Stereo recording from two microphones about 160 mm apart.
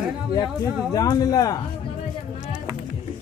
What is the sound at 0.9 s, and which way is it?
Speech, 25° left (ahead or behind).